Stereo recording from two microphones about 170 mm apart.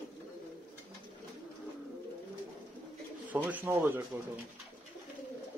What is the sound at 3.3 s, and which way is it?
Speech, 10° right (ahead or behind).